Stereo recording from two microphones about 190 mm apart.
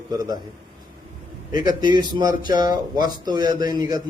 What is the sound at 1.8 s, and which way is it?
A man's voice, 25° right (ahead or behind).